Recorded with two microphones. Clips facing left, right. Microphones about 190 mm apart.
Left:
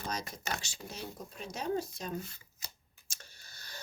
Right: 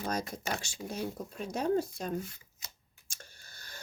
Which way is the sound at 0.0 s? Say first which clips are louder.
Right 5 dB; 50° right (ahead or behind).